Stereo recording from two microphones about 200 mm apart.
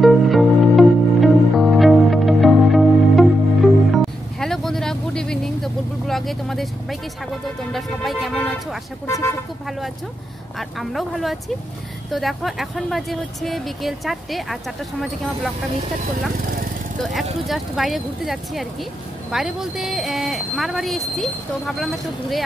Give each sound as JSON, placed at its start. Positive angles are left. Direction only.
{"t": 0.0, "sound": "music", "side_deg": 0}
{"t": 7.7, "sound": "speech", "side_deg": 0}
{"t": 9.0, "sound": "speech", "side_deg": 15}
{"t": 10.8, "sound": "speech", "side_deg": 0}
{"t": 17.0, "sound": "speech", "side_deg": 0}